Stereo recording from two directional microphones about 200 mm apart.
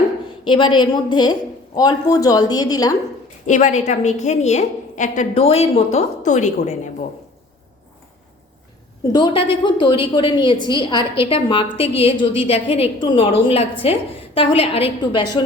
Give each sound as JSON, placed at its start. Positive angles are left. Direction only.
{"t": 0.4, "sound": "a woman's voice", "side_deg": 25}
{"t": 3.4, "sound": "a woman's voice", "side_deg": 35}
{"t": 9.1, "sound": "a woman's voice", "side_deg": 25}